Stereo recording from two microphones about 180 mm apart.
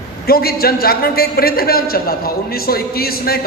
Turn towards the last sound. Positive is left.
turn(degrees=55)  # may be behind; listen again after turning